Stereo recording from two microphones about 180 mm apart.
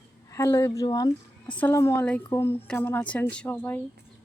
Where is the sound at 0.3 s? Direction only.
15° left (ahead or behind).